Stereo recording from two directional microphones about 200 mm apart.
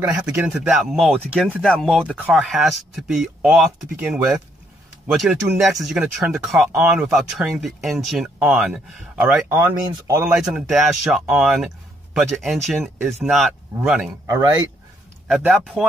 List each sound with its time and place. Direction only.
0.1 s speech: 5° right (ahead or behind)
10.4 s speech: centre (ahead or behind)
14.2 s speech: 15° right (ahead or behind)
15.2 s speech: centre (ahead or behind)